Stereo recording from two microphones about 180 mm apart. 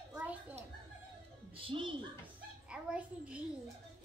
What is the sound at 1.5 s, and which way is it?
Music, 30° right (ahead or behind).